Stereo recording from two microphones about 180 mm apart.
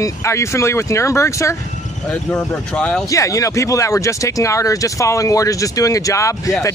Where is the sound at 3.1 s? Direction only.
15° left (ahead or behind).